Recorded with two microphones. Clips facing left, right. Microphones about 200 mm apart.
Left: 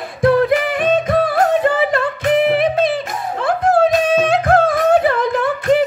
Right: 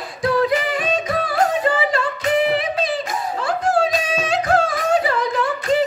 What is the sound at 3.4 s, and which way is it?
Music, 55° left (ahead or behind).